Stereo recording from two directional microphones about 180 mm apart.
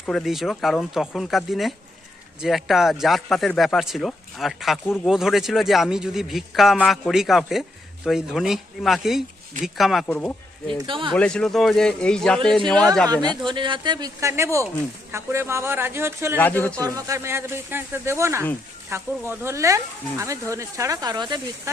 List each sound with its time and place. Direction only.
0.0 s speech: centre (ahead or behind)
10.7 s speech: 25° right (ahead or behind)
11.1 s speech: 5° left (ahead or behind)
13.5 s speech: 25° right (ahead or behind)
16.4 s speech: 10° left (ahead or behind)
16.7 s speech: 15° right (ahead or behind)